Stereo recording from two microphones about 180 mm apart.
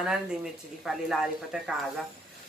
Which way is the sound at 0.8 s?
Centre (ahead or behind).